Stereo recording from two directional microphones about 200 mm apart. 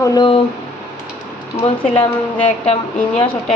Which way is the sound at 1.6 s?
25° left (ahead or behind).